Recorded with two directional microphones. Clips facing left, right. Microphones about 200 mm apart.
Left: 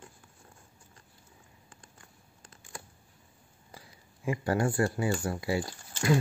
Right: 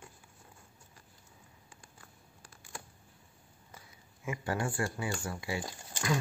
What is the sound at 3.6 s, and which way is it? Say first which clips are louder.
Speech: left 4 dB; 35° left (ahead or behind).